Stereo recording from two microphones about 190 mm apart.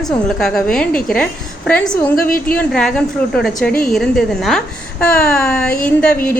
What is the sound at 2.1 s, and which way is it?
Speech, 50° left (ahead or behind).